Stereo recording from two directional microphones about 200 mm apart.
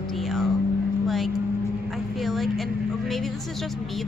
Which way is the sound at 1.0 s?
Centre (ahead or behind).